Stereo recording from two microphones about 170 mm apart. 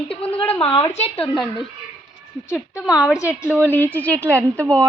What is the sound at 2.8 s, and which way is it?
Speech, 5° right (ahead or behind).